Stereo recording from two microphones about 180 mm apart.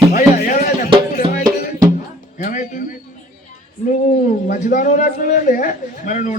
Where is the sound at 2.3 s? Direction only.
45° left (ahead or behind).